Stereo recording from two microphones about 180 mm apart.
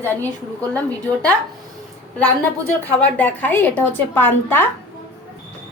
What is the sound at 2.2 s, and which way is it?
A woman's voice, 5° left (ahead or behind).